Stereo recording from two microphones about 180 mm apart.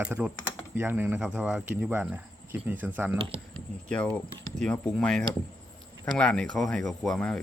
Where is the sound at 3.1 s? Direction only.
30° right (ahead or behind).